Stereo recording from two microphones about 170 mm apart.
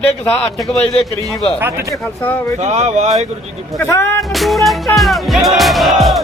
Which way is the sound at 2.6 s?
40° right (ahead or behind).